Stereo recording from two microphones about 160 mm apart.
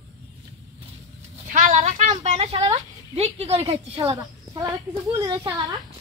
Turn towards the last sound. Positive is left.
turn(degrees=-25)  # may be behind; listen again after turning